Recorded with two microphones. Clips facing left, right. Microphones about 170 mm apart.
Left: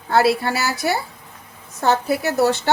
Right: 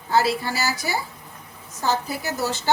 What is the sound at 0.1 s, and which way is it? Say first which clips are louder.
A woman's voice: left 4 dB; 65° left (ahead or behind).